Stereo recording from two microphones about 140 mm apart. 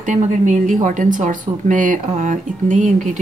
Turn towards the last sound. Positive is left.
turn(degrees=-65)  # may be behind; listen again after turning